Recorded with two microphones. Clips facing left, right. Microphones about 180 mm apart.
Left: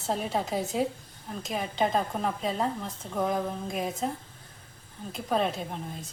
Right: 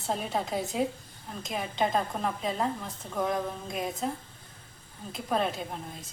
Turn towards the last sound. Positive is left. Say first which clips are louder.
# left 2 dB
turn(degrees=0)  # may be behind; listen again after turning